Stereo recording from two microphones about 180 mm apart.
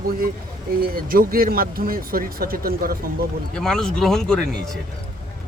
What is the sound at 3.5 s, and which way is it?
Speech, 5° left (ahead or behind).